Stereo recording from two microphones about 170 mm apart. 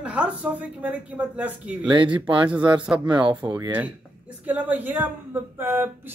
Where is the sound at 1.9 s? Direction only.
30° right (ahead or behind).